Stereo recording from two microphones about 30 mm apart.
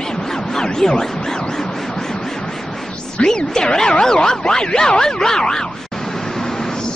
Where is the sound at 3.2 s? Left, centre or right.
Left.